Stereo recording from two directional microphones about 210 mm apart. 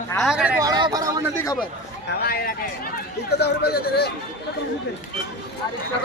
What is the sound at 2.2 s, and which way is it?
Speech, 45° left (ahead or behind).